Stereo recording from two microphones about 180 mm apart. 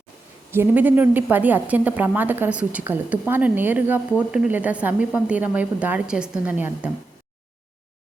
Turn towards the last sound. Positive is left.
turn(degrees=-10)  # may be behind; listen again after turning